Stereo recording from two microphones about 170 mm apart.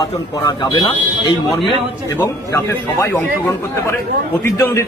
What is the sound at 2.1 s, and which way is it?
Speech, 15° left (ahead or behind).